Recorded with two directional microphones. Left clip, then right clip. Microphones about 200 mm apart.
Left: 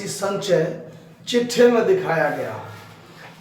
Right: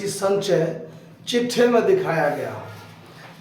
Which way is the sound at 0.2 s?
15° right (ahead or behind).